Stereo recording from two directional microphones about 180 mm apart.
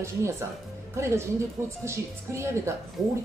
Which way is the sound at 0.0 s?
15° right (ahead or behind).